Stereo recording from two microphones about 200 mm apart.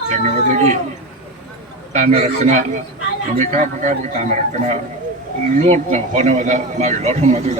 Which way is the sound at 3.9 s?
35° right (ahead or behind).